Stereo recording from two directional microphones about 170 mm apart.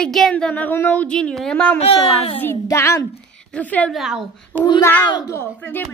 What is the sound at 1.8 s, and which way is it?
Speech, 35° left (ahead or behind).